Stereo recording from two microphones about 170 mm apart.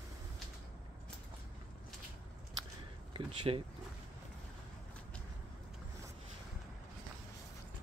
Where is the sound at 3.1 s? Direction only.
30° right (ahead or behind).